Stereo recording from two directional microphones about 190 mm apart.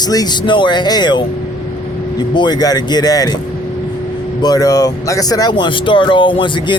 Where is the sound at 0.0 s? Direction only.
20° left (ahead or behind).